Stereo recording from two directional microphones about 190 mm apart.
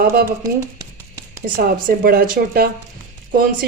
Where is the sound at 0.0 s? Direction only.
50° right (ahead or behind).